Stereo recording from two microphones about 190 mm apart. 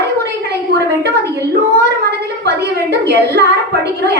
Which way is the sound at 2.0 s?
60° right (ahead or behind).